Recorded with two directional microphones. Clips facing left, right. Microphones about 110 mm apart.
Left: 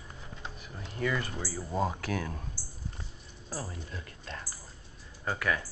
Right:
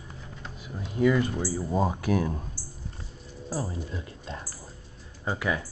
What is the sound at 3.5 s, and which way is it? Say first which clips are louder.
Speech: right 7 dB; 20° right (ahead or behind).